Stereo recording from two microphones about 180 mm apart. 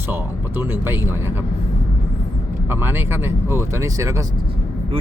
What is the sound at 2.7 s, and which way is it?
Speech, 10° right (ahead or behind).